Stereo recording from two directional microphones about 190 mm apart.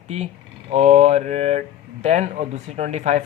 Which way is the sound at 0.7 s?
35° right (ahead or behind).